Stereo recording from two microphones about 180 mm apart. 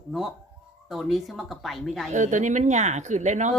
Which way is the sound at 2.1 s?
45° right (ahead or behind).